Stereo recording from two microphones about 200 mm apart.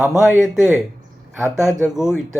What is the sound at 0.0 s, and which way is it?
Speech, 5° right (ahead or behind).